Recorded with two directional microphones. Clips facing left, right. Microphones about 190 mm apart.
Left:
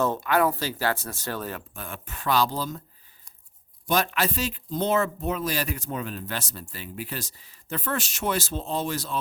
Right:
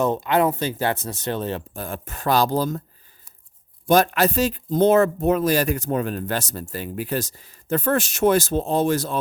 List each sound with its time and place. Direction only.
0.0 s speech: 20° right (ahead or behind); by 2.8 s 45° right (ahead or behind)
3.8 s a man's voice: 45° right (ahead or behind)